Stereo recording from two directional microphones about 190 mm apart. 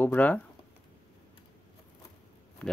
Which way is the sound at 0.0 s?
10° left (ahead or behind).